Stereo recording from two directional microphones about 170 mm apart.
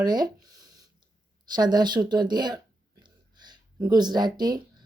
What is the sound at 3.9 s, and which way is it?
Speech, 25° right (ahead or behind).